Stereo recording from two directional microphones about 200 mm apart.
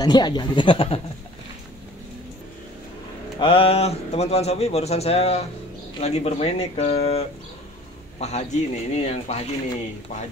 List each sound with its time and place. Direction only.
0.0 s speech: 20° left (ahead or behind)
3.3 s speech: 25° left (ahead or behind)